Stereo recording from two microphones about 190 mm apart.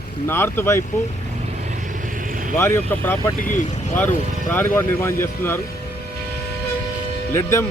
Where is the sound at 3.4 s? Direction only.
45° left (ahead or behind).